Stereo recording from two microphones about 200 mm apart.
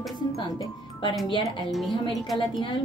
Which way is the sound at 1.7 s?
Centre (ahead or behind).